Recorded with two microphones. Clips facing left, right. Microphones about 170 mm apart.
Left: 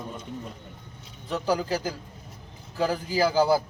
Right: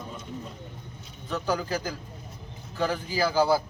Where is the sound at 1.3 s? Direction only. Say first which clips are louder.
Left 2 dB; 30° left (ahead or behind).